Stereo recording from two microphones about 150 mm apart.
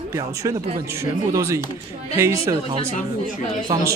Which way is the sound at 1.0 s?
20° right (ahead or behind).